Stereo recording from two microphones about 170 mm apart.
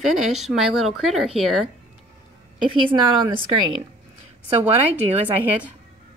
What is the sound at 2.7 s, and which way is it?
Speech, 30° right (ahead or behind).